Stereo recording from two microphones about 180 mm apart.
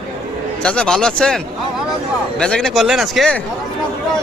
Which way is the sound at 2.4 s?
5° left (ahead or behind).